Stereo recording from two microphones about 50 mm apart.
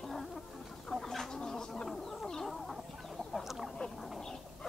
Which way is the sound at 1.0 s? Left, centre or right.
Centre.